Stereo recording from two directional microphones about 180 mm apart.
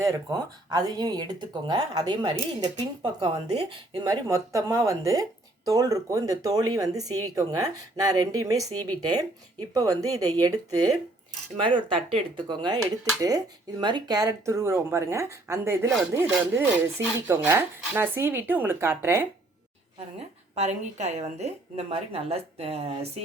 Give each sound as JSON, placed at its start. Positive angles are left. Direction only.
{"t": 0.0, "sound": "speech", "side_deg": -20}
{"t": 20.1, "sound": "a woman's voice", "side_deg": -40}